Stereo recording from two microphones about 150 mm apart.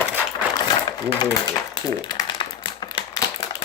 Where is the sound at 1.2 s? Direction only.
25° left (ahead or behind).